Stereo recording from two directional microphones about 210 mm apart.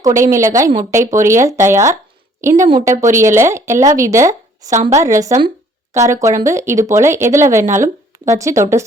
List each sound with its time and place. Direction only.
0.0 s a woman's voice: 15° right (ahead or behind)